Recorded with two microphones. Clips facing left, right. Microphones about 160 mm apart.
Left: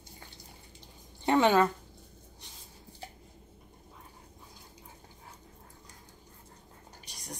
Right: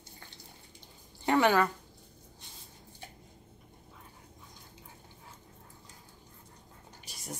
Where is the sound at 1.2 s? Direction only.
20° left (ahead or behind).